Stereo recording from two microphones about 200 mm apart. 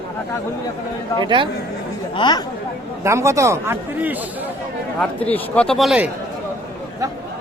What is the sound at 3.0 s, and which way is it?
A man's voice, 15° right (ahead or behind).